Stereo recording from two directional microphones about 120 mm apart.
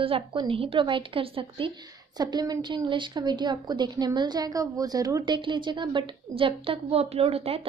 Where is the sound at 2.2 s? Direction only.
35° right (ahead or behind).